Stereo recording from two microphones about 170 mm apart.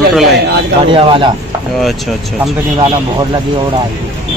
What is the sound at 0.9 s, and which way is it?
Speech, 30° right (ahead or behind).